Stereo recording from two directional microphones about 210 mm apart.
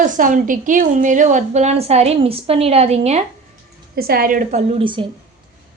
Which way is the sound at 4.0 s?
45° right (ahead or behind).